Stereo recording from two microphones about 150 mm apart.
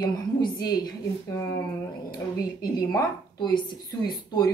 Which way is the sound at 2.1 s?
25° left (ahead or behind).